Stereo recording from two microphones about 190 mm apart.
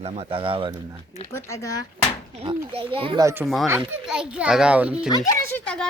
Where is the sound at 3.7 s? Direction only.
5° right (ahead or behind).